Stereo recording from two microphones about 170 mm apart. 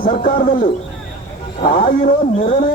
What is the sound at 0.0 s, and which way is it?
Speech, 50° left (ahead or behind).